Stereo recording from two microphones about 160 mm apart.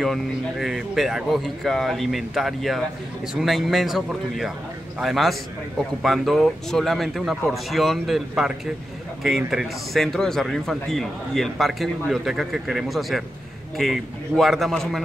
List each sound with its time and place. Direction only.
0.0 s a man's voice: centre (ahead or behind)